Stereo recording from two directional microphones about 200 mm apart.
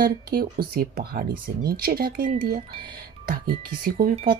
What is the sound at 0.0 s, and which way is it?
Speech, 50° right (ahead or behind).